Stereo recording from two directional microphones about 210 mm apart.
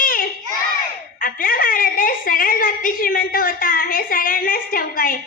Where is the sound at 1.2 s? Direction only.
40° left (ahead or behind).